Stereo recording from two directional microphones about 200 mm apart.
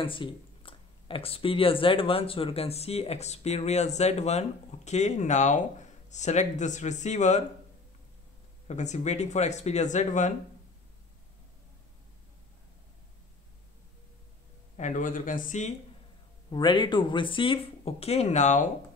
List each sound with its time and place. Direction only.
0.0 s speech: 25° left (ahead or behind)
8.6 s speech: 35° left (ahead or behind)
14.8 s speech: 40° left (ahead or behind)
16.4 s speech: 20° left (ahead or behind)